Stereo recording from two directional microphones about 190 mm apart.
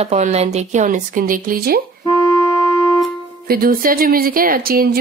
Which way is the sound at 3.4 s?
50° right (ahead or behind).